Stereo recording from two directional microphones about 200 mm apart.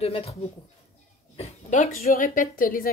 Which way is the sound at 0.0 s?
30° left (ahead or behind).